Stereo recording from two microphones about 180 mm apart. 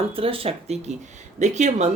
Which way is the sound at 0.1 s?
30° right (ahead or behind).